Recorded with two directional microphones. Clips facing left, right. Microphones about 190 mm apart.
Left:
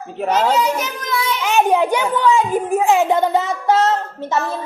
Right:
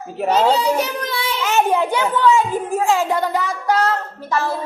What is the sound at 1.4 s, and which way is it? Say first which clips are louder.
A child's voice: left 2 dB; 15° left (ahead or behind).